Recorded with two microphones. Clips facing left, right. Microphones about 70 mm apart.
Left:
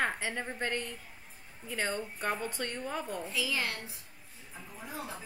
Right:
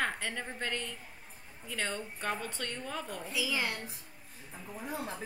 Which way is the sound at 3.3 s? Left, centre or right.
Centre.